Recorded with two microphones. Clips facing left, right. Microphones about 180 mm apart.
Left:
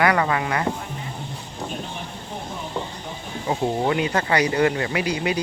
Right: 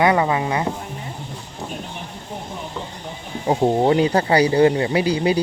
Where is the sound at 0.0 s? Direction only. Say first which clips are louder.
Right 3 dB; 20° right (ahead or behind).